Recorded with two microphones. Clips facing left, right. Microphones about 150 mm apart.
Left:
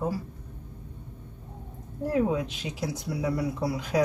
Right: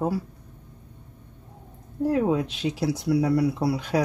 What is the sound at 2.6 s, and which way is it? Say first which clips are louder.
Speech: right 7 dB; 70° right (ahead or behind).